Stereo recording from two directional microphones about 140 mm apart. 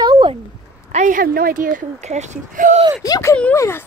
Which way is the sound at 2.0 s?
60° right (ahead or behind).